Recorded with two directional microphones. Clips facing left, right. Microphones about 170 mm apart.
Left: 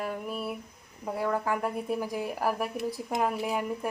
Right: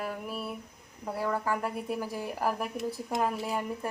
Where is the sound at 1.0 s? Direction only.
10° left (ahead or behind).